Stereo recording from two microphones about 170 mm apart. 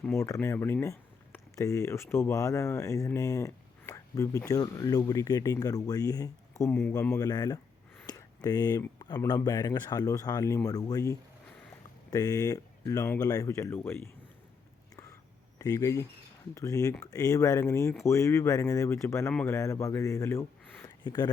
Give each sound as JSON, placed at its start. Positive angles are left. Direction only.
{"t": 0.0, "sound": "speech", "side_deg": 15}
{"t": 6.7, "sound": "a man's voice", "side_deg": 5}
{"t": 7.2, "sound": "speech", "side_deg": 20}
{"t": 8.0, "sound": "a sound", "side_deg": 20}
{"t": 9.0, "sound": "speech", "side_deg": 25}
{"t": 15.5, "sound": "speech", "side_deg": 20}
{"t": 21.0, "sound": "speech", "side_deg": 25}